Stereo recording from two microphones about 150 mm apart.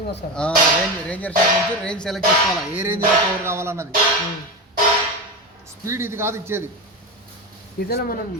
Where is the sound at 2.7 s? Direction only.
10° right (ahead or behind).